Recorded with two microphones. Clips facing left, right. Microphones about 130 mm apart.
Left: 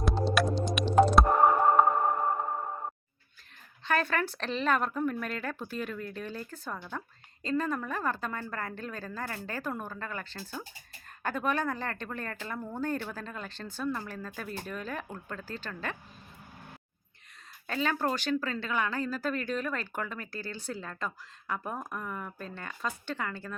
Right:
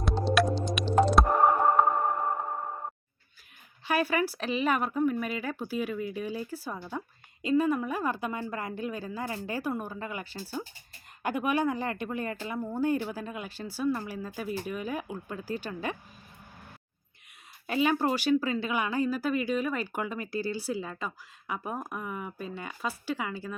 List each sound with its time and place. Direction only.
0.0 s music: centre (ahead or behind)
3.8 s speech: 10° right (ahead or behind)
17.7 s speech: 15° right (ahead or behind)